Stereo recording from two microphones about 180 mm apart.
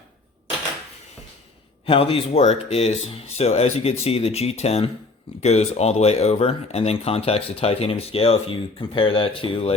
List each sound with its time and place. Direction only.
1.9 s speech: 30° left (ahead or behind)